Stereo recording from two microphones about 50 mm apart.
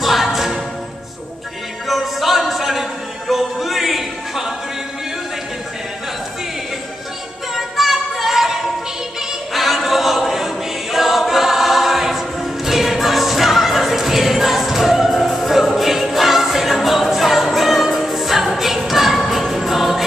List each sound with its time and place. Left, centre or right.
0.0 s music: centre
1.9 s music: centre
7.5 s music: centre
9.5 s choir: centre